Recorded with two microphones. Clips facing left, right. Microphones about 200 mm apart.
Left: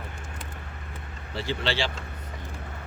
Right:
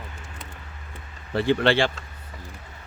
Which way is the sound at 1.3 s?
55° right (ahead or behind).